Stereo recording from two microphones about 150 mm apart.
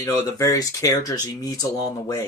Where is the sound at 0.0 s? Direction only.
25° left (ahead or behind).